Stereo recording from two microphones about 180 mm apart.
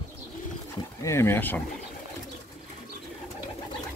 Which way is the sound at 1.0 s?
15° left (ahead or behind).